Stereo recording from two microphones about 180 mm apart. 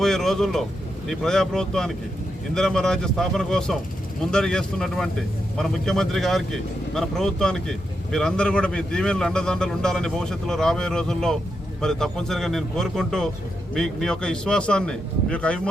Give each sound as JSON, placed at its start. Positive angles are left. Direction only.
{"t": 0.0, "sound": "vehicle", "side_deg": 0}
{"t": 1.0, "sound": "speech", "side_deg": 0}